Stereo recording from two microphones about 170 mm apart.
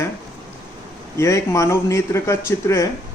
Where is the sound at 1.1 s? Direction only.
15° left (ahead or behind).